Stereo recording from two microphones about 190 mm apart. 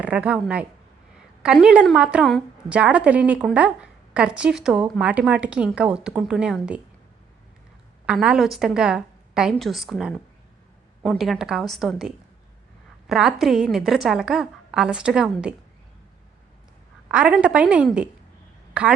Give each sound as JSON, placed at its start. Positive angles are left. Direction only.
{"t": 0.0, "sound": "a woman's voice", "side_deg": -5}
{"t": 8.0, "sound": "a woman's voice", "side_deg": -5}
{"t": 17.1, "sound": "a woman's voice", "side_deg": -5}